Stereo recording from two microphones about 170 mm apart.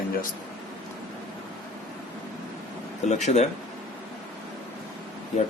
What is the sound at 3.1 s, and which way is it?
Speech, 40° left (ahead or behind).